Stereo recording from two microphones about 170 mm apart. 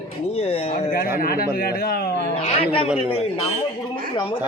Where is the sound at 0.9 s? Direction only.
60° left (ahead or behind).